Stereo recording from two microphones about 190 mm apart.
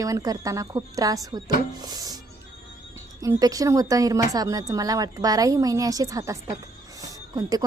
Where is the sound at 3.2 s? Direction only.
20° right (ahead or behind).